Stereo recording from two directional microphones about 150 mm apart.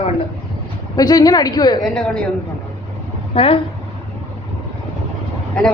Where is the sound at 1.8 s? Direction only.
5° left (ahead or behind).